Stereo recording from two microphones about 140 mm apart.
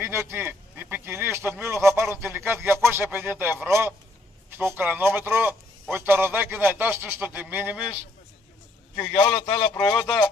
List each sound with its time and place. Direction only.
0.0 s a sound: 15° right (ahead or behind)
2.3 s a man's voice: 15° right (ahead or behind)
8.9 s a man's voice: 30° left (ahead or behind)
9.9 s speech: 5° left (ahead or behind)